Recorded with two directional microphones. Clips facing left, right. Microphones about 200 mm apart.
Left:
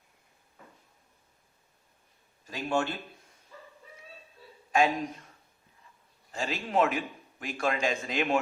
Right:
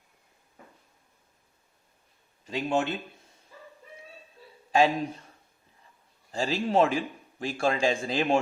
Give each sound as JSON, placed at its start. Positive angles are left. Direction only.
{"t": 2.5, "sound": "speech", "side_deg": -20}
{"t": 4.7, "sound": "speech", "side_deg": -30}
{"t": 6.3, "sound": "a man's voice", "side_deg": -30}